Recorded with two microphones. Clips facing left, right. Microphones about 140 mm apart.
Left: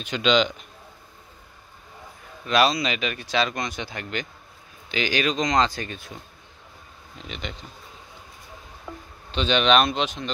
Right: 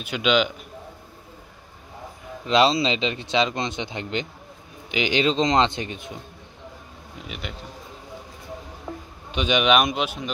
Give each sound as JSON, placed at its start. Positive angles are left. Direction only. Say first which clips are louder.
{"t": 0.0, "sound": "speech", "louder": "even", "side_deg": -10}
{"t": 2.4, "sound": "speech", "louder": "right 2 dB", "side_deg": -25}
{"t": 7.2, "sound": "speech", "louder": "left 1 dB", "side_deg": -10}
{"t": 9.3, "sound": "speech", "louder": "even", "side_deg": -10}